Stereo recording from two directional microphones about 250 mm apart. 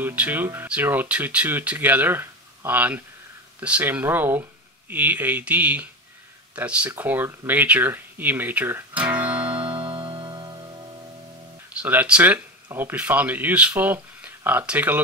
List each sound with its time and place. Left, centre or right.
0.0 s speech: centre
9.6 s music: centre
11.8 s speech: centre